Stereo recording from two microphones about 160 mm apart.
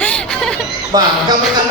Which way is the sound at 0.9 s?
25° right (ahead or behind).